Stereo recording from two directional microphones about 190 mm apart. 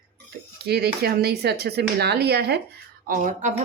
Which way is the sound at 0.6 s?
55° right (ahead or behind).